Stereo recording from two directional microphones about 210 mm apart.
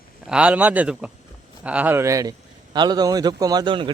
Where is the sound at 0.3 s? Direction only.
5° right (ahead or behind).